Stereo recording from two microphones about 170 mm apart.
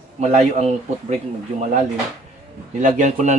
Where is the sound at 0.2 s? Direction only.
40° right (ahead or behind).